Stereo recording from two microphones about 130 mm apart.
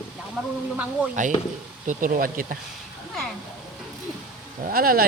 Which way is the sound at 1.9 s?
90° right.